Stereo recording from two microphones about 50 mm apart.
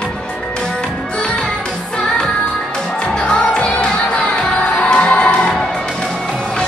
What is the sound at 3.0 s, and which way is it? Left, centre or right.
Music, centre.